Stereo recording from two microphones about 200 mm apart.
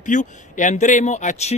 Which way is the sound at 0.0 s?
40° left (ahead or behind).